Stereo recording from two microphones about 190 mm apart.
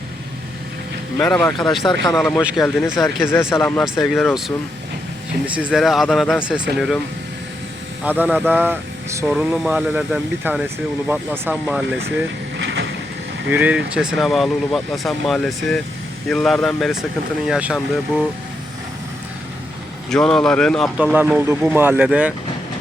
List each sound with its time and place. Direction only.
1.2 s speech: 5° left (ahead or behind)
1.5 s speech: 20° left (ahead or behind)
2.1 s speech: centre (ahead or behind)
3.3 s speech: 10° left (ahead or behind)
3.8 s speech: centre (ahead or behind)
5.5 s speech: 5° right (ahead or behind)
8.0 s speech: 10° right (ahead or behind)
12.5 s boat: 65° right (ahead or behind)
13.5 s speech: 5° right (ahead or behind)
20.1 s speech: 5° left (ahead or behind)